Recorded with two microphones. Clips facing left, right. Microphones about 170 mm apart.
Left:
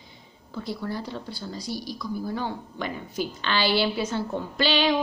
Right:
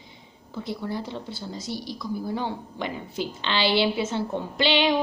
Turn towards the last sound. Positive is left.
turn(degrees=-20)  # may be behind; listen again after turning